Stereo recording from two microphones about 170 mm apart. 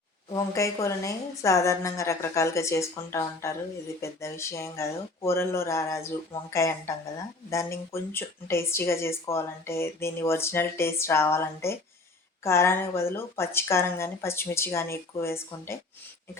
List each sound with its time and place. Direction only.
0.3 s speech: 20° left (ahead or behind)